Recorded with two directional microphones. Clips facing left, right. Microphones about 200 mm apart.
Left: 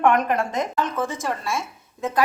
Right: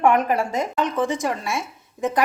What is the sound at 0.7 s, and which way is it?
A woman's voice, 15° right (ahead or behind).